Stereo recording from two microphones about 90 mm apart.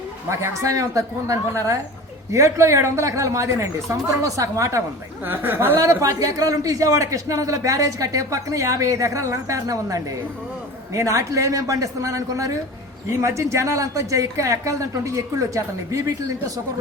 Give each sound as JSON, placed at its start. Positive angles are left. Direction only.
{"t": 0.3, "sound": "a man's voice", "side_deg": -35}
{"t": 5.2, "sound": "speech", "side_deg": -25}
{"t": 5.8, "sound": "a man's voice", "side_deg": -35}